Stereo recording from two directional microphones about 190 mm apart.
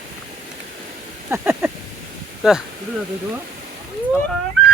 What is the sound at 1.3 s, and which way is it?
Speech, 10° right (ahead or behind).